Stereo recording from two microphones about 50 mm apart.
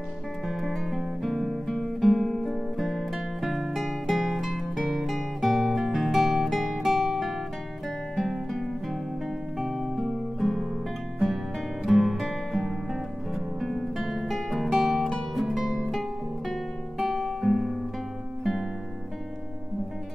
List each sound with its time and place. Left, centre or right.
0.5 s guitar: centre
9.6 s music: centre
11.8 s music: centre
13.3 s guitar: centre
17.0 s music: centre